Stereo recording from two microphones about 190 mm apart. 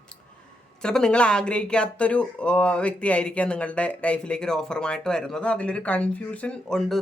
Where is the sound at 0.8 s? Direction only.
5° left (ahead or behind).